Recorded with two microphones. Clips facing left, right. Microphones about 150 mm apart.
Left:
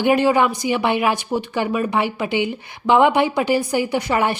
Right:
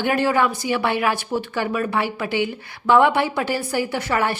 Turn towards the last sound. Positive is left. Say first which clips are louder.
# left 3 dB
turn(degrees=15)  # may be behind; listen again after turning